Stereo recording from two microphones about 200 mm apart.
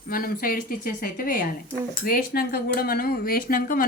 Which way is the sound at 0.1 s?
45° left (ahead or behind).